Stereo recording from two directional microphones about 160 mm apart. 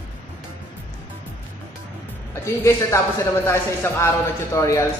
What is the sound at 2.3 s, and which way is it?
A man's voice, 20° left (ahead or behind).